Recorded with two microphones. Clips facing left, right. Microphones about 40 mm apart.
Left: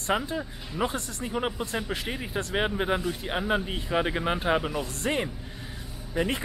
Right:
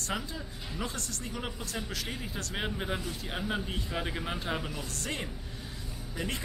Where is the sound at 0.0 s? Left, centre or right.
Left.